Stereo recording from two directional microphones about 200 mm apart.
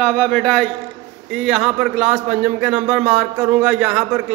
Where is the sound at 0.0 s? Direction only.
5° left (ahead or behind).